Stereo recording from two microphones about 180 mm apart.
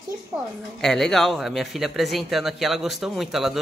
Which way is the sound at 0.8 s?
Centre (ahead or behind).